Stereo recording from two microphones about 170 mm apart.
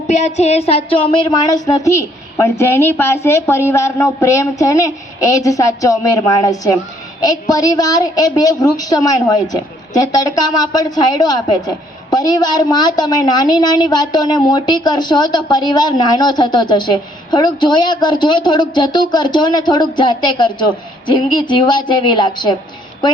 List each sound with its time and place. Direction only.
0.1 s a woman's voice: 40° left (ahead or behind); by 22.5 s 25° left (ahead or behind)